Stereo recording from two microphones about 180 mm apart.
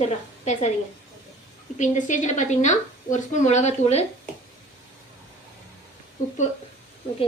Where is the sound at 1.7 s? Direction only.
40° left (ahead or behind).